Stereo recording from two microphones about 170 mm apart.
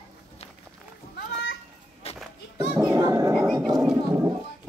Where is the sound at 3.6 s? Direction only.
Centre (ahead or behind).